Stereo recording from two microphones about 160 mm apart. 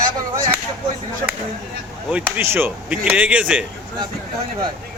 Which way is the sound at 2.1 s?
10° right (ahead or behind).